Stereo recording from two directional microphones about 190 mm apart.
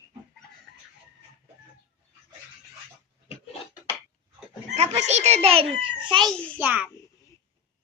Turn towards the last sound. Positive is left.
turn(degrees=-10)  # may be behind; listen again after turning